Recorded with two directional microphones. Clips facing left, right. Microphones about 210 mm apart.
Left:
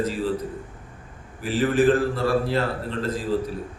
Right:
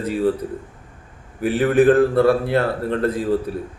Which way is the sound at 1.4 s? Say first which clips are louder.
Right 5 dB; 60° right (ahead or behind).